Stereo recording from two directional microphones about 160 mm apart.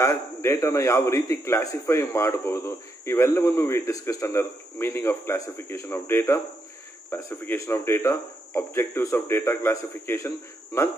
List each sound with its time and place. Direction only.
0.0 s a man's voice: 15° left (ahead or behind)